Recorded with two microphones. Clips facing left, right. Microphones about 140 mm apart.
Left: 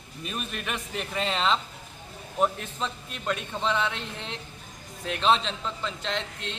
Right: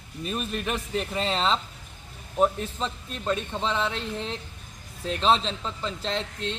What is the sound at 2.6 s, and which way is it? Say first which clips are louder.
A woman's voice: right 2 dB; 35° right (ahead or behind).